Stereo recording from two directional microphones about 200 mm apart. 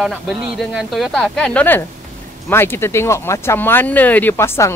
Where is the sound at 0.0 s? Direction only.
Centre (ahead or behind).